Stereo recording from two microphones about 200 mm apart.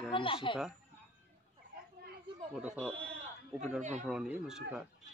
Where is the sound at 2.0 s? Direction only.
50° right (ahead or behind).